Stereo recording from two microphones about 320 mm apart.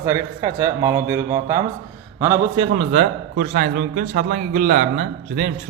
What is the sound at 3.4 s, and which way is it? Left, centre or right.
A man's voice, right.